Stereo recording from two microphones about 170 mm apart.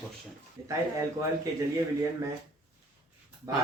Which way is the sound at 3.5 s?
20° right (ahead or behind).